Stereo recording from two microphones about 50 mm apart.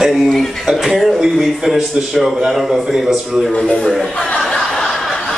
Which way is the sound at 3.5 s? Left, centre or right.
Centre.